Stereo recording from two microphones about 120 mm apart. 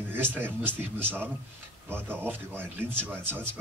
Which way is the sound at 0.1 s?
15° right (ahead or behind).